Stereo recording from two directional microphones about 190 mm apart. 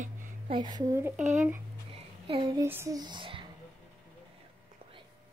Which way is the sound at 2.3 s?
25° right (ahead or behind).